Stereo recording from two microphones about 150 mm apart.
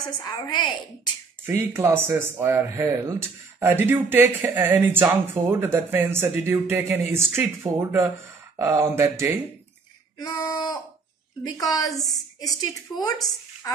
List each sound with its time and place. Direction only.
0.2 s a woman's voice: 30° left (ahead or behind)
1.4 s speech: 20° right (ahead or behind)
10.1 s a woman's voice: 20° left (ahead or behind)